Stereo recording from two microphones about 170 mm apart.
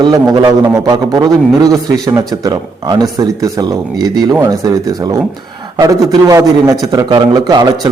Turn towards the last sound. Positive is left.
turn(degrees=-25)  # may be behind; listen again after turning